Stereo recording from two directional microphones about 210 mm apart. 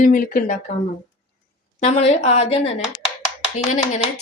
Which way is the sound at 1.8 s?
30° left (ahead or behind).